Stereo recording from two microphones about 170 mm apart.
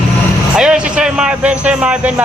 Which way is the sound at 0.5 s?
5° right (ahead or behind).